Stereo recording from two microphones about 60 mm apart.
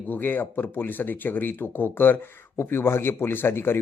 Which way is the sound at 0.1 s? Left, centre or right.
Left.